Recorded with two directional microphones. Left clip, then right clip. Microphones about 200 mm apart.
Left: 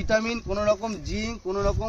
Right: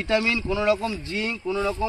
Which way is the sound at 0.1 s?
25° left (ahead or behind).